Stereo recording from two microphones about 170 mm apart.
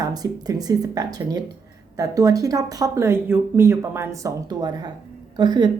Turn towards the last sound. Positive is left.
turn(degrees=-25)  # may be behind; listen again after turning